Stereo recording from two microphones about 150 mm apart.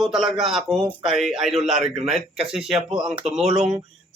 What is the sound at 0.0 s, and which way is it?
A man's voice, 5° right (ahead or behind).